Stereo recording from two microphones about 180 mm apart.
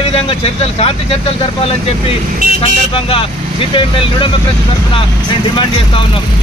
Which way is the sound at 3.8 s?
30° left (ahead or behind).